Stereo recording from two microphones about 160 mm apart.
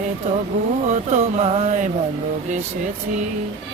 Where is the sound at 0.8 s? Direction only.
45° right (ahead or behind).